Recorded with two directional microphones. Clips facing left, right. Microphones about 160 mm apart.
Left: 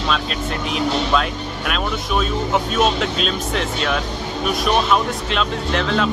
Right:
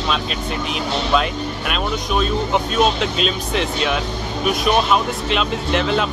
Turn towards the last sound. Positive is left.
turn(degrees=-5)  # may be behind; listen again after turning